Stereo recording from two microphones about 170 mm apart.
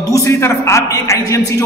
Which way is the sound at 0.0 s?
20° left (ahead or behind).